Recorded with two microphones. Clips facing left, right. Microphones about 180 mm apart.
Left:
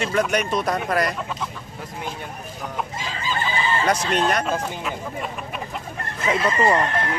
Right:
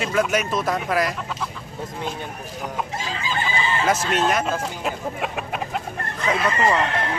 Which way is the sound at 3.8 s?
5° right (ahead or behind).